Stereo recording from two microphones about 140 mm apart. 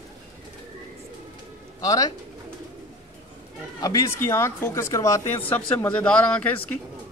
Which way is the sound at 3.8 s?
25° left (ahead or behind).